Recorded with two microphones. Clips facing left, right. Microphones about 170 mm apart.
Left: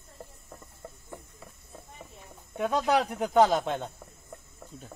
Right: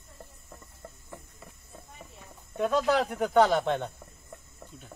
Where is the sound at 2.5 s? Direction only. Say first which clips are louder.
Right 1 dB; 15° left (ahead or behind).